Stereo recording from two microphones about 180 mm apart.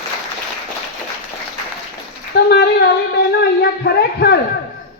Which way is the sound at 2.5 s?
65° left (ahead or behind).